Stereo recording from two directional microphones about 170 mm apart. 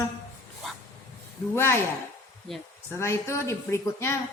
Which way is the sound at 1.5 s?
15° left (ahead or behind).